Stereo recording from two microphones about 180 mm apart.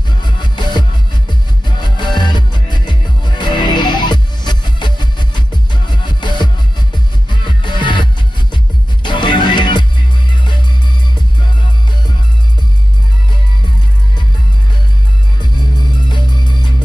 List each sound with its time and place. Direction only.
0.2 s music: 25° left (ahead or behind)
16.1 s music: 25° left (ahead or behind)